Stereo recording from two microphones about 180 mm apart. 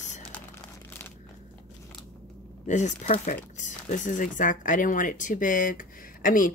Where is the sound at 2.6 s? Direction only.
40° left (ahead or behind).